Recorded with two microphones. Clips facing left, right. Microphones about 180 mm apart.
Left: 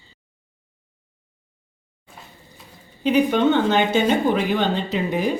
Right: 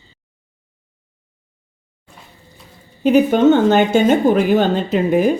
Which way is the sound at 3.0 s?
45° right (ahead or behind).